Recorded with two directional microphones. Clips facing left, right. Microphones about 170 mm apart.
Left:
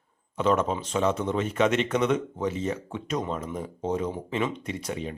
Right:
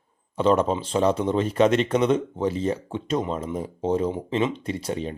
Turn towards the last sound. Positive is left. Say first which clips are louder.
# right 4 dB
turn(degrees=-30)  # may be behind; listen again after turning